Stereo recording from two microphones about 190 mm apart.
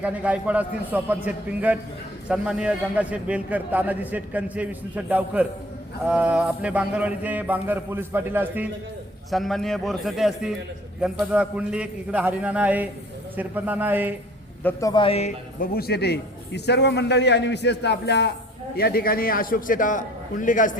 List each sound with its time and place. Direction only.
0.0 s a man's voice: 5° right (ahead or behind)
9.3 s a man's voice: centre (ahead or behind)
14.6 s a man's voice: 15° left (ahead or behind); by 15.3 s 30° left (ahead or behind)
15.6 s a man's voice: 55° left (ahead or behind)